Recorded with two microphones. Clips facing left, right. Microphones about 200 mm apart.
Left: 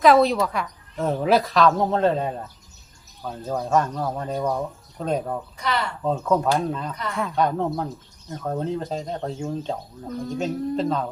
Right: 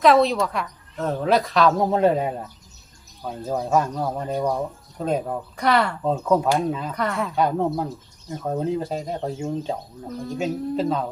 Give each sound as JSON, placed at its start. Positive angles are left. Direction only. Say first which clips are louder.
{"t": 0.0, "sound": "speech", "louder": "even", "side_deg": 0}
{"t": 5.5, "sound": "speech", "louder": "right 8 dB", "side_deg": -60}
{"t": 6.0, "sound": "speech", "louder": "right 1 dB", "side_deg": -5}
{"t": 6.9, "sound": "speech", "louder": "right 6 dB", "side_deg": -60}
{"t": 7.2, "sound": "speech", "louder": "left 1 dB", "side_deg": -5}